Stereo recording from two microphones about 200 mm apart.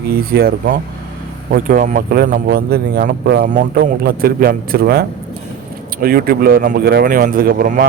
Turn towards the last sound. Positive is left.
turn(degrees=-45)  # may be behind; listen again after turning